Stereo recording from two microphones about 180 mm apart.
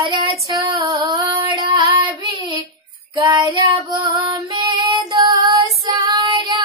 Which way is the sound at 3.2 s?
25° right (ahead or behind).